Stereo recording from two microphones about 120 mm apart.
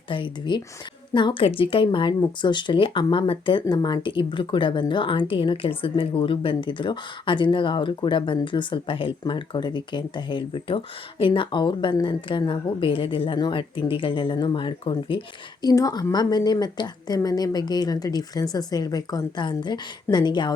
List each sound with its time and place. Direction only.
0.1 s speech: 40° left (ahead or behind)
15.6 s a woman's voice: 30° left (ahead or behind)